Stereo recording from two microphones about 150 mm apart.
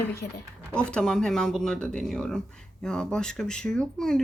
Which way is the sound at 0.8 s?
5° left (ahead or behind).